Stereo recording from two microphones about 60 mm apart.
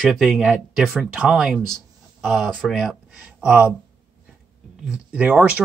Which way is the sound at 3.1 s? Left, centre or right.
Centre.